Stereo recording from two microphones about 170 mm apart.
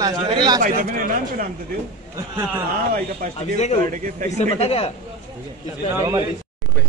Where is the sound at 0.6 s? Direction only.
55° right (ahead or behind).